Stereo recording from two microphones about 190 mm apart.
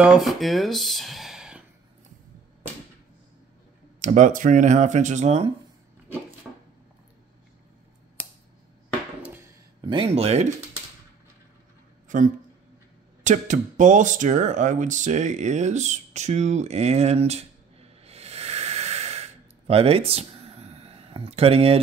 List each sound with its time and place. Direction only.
0.0 s speech: centre (ahead or behind)
4.0 s speech: 40° right (ahead or behind)
9.8 s speech: 30° right (ahead or behind)
12.1 s speech: 40° right (ahead or behind)
19.7 s a sound: 30° right (ahead or behind)